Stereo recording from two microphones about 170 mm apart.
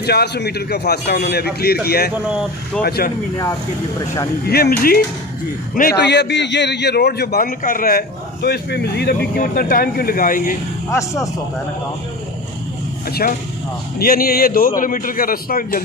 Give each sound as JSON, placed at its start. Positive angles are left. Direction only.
{"t": 0.0, "sound": "a man's voice", "side_deg": 70}
{"t": 2.2, "sound": "speech", "side_deg": -5}
{"t": 4.5, "sound": "a man's voice", "side_deg": 65}
{"t": 5.8, "sound": "a man's voice", "side_deg": 75}
{"t": 10.9, "sound": "speech", "side_deg": 15}
{"t": 13.9, "sound": "a man's voice", "side_deg": 60}